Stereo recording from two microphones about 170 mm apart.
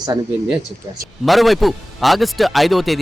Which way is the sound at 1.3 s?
Centre (ahead or behind).